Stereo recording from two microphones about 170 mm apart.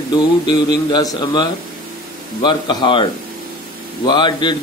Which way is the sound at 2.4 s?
30° left (ahead or behind).